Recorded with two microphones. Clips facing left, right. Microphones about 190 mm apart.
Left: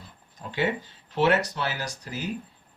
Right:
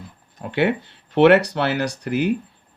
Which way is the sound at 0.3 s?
65° right (ahead or behind).